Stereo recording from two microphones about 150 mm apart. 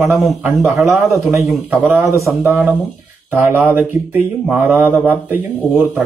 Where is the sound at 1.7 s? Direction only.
15° right (ahead or behind).